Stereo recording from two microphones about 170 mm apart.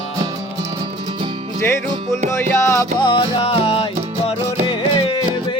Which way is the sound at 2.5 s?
15° left (ahead or behind).